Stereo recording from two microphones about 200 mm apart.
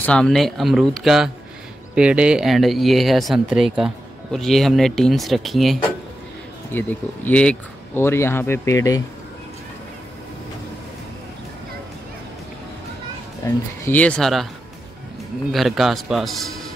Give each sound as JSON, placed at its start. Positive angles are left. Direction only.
{"t": 0.0, "sound": "speech", "side_deg": 5}
{"t": 13.4, "sound": "speech", "side_deg": 15}
{"t": 13.8, "sound": "speech", "side_deg": 5}
{"t": 15.5, "sound": "speech", "side_deg": 0}